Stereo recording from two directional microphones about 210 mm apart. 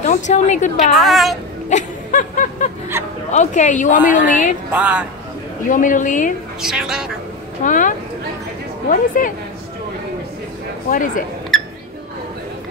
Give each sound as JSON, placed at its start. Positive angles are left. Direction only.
{"t": 0.0, "sound": "a woman's voice", "side_deg": 35}
{"t": 0.9, "sound": "a woman's voice", "side_deg": 0}
{"t": 1.7, "sound": "a sound", "side_deg": 35}
{"t": 3.3, "sound": "a woman's voice", "side_deg": 35}
{"t": 4.0, "sound": "a woman's voice", "side_deg": -5}
{"t": 5.7, "sound": "a woman's voice", "side_deg": 40}
{"t": 6.6, "sound": "a woman's voice", "side_deg": -5}
{"t": 7.6, "sound": "a woman's voice", "side_deg": 40}
{"t": 8.9, "sound": "a woman's voice", "side_deg": 40}
{"t": 10.9, "sound": "a woman's voice", "side_deg": 40}